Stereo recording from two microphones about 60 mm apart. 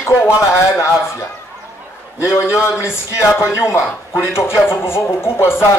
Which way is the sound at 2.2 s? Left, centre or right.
Left.